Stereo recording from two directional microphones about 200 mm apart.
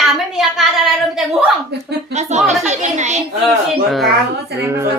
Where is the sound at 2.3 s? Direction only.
35° right (ahead or behind).